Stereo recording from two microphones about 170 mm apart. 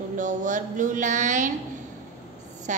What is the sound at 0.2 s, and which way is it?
A woman's voice, 50° right (ahead or behind).